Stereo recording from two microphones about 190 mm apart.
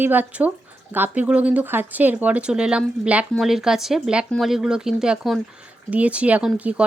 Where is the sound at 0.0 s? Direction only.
10° right (ahead or behind).